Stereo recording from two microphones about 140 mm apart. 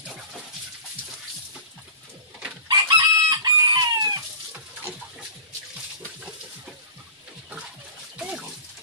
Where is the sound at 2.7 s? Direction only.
30° right (ahead or behind).